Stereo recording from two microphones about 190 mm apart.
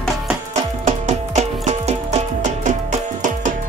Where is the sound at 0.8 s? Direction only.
35° right (ahead or behind).